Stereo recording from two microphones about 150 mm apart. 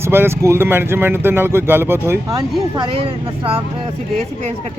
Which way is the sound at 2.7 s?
30° right (ahead or behind).